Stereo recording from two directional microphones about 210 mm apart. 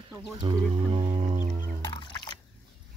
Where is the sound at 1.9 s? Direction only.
20° left (ahead or behind).